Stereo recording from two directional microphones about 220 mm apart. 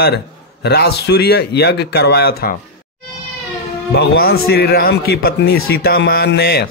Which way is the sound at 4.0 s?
45° left (ahead or behind).